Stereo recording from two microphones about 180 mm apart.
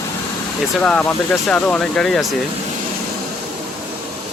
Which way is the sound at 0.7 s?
5° left (ahead or behind).